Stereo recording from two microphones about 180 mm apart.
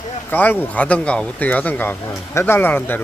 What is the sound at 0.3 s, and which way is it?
Speech, 10° left (ahead or behind).